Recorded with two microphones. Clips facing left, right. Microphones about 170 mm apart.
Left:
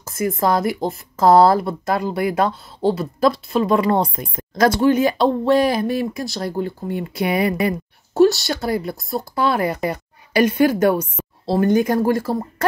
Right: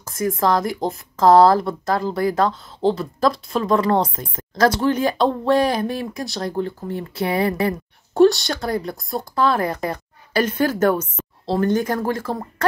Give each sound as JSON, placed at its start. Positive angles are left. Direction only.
{"t": 0.0, "sound": "speech", "side_deg": 10}